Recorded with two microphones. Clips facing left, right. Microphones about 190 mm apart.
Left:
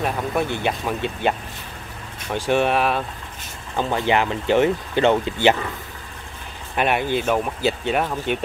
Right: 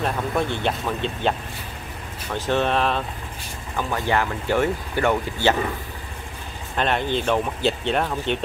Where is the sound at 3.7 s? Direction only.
20° left (ahead or behind).